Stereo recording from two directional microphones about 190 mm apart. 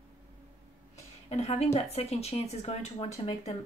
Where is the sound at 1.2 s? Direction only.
35° left (ahead or behind).